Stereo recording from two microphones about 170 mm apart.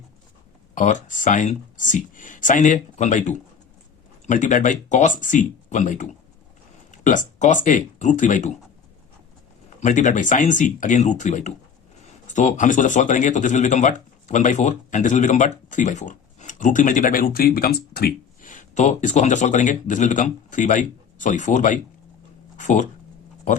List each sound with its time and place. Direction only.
0.8 s speech: 45° left (ahead or behind)
9.6 s speech: 45° left (ahead or behind)